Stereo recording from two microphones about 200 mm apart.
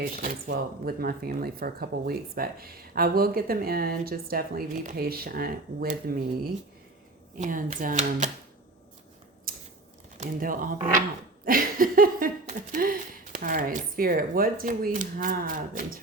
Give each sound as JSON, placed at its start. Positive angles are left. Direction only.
{"t": 0.0, "sound": "speech", "side_deg": -45}
{"t": 7.3, "sound": "speech", "side_deg": -40}
{"t": 9.5, "sound": "scissors", "side_deg": -45}
{"t": 10.2, "sound": "speech", "side_deg": -45}